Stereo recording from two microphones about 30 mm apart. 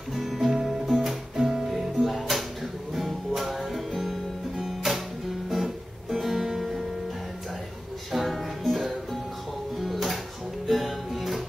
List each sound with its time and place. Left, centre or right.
0.2 s music: centre
1.3 s music: right
1.7 s music: centre
5.5 s guitar: centre
8.1 s music: centre